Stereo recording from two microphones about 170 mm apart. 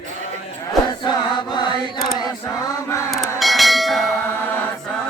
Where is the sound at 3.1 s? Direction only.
Centre (ahead or behind).